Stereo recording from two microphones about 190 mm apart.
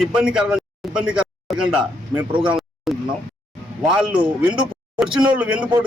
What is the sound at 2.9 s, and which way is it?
A man's voice, centre (ahead or behind).